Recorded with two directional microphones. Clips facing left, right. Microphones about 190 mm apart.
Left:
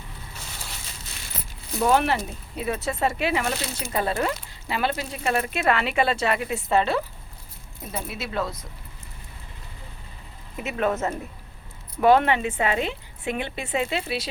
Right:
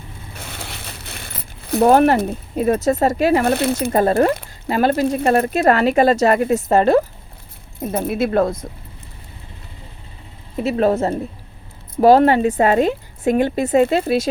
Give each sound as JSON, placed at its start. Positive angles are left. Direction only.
{"t": 0.3, "sound": "a sound", "side_deg": -60}
{"t": 3.4, "sound": "speech", "side_deg": -60}
{"t": 5.2, "sound": "a woman's voice", "side_deg": -40}
{"t": 10.6, "sound": "a woman's voice", "side_deg": -35}